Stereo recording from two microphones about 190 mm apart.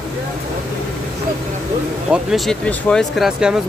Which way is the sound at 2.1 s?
Centre (ahead or behind).